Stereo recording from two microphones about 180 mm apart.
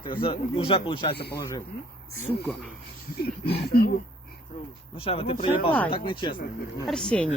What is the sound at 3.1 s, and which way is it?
Speech, 65° left (ahead or behind).